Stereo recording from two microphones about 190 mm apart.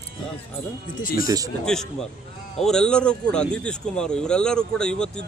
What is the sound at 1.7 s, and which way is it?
Speech, 5° left (ahead or behind).